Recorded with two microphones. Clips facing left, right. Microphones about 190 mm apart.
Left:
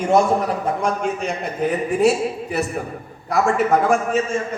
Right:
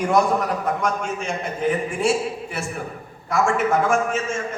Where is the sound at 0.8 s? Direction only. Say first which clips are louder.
Left 3 dB; 35° left (ahead or behind).